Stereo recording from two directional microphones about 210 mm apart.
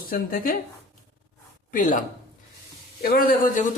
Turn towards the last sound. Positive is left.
turn(degrees=45)  # may be behind; listen again after turning